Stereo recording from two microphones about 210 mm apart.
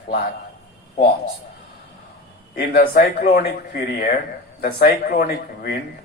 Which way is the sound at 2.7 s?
45° left (ahead or behind).